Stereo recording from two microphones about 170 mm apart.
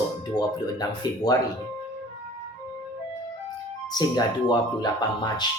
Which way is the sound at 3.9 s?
25° left (ahead or behind).